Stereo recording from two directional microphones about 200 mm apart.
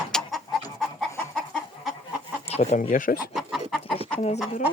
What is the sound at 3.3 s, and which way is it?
Chicken, centre (ahead or behind).